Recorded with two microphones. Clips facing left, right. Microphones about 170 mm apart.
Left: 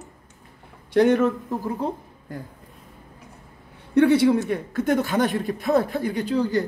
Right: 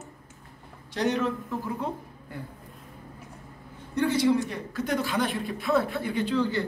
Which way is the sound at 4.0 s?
60° left (ahead or behind).